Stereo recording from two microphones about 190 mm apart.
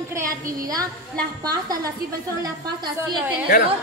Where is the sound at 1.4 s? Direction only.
20° right (ahead or behind).